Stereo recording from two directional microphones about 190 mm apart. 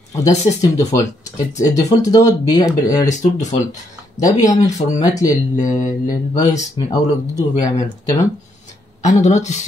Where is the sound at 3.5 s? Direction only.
20° left (ahead or behind).